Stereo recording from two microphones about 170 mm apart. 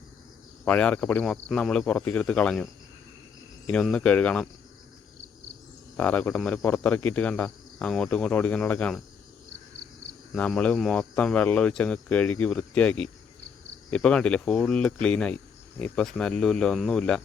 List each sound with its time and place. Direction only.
0.6 s cricket: 5° left (ahead or behind)
3.7 s cricket: 5° left (ahead or behind)
6.0 s cricket: 10° left (ahead or behind)
10.3 s cricket: 5° left (ahead or behind)
13.9 s speech: 5° left (ahead or behind)
15.0 s cricket: 5° left (ahead or behind)
15.8 s speech: 5° left (ahead or behind)